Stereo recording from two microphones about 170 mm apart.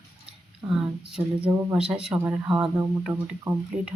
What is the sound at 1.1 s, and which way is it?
Speech, 5° right (ahead or behind).